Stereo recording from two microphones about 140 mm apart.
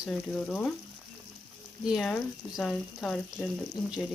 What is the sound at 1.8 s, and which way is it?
Speech, centre (ahead or behind).